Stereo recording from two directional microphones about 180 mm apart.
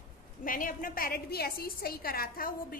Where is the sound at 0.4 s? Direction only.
50° left (ahead or behind).